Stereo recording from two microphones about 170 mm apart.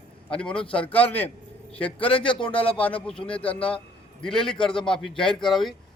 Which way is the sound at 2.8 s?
5° left (ahead or behind).